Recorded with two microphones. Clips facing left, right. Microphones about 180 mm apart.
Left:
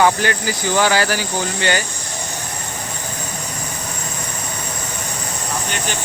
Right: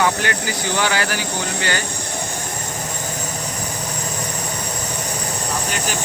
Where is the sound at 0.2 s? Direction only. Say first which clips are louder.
Left 3 dB; 35° left (ahead or behind).